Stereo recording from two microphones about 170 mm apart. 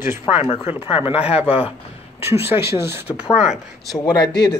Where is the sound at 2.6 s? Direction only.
15° right (ahead or behind).